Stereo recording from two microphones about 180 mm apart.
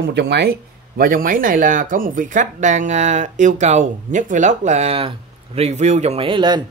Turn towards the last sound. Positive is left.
turn(degrees=-25)  # may be behind; listen again after turning